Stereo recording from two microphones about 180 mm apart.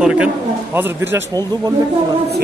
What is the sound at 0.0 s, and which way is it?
Speech, 5° right (ahead or behind).